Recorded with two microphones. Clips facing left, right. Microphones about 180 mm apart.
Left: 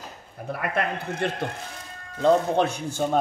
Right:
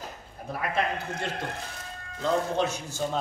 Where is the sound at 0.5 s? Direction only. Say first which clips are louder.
Left 2 dB; 60° left (ahead or behind).